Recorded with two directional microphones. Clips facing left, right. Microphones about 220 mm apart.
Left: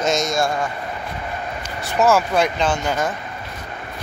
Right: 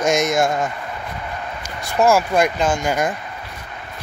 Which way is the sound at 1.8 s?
10° right (ahead or behind).